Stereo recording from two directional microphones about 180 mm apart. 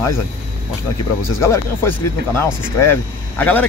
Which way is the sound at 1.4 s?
15° left (ahead or behind).